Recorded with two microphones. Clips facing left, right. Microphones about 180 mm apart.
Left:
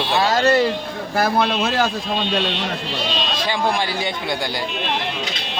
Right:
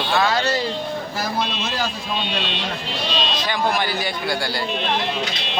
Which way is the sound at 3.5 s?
25° left (ahead or behind).